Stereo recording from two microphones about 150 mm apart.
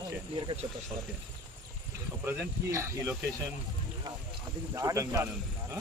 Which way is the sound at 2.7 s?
15° right (ahead or behind).